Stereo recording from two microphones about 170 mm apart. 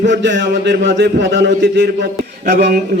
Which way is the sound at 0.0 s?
90° right.